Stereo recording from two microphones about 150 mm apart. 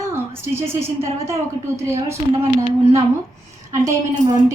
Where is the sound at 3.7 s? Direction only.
20° right (ahead or behind).